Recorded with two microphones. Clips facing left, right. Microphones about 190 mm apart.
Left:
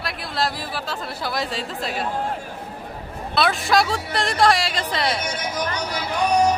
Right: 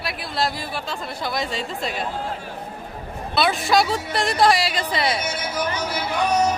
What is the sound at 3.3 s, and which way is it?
A woman's voice, centre (ahead or behind).